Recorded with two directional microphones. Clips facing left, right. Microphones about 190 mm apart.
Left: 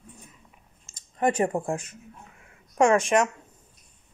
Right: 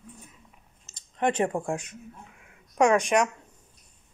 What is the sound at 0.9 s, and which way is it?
Speech, 10° left (ahead or behind).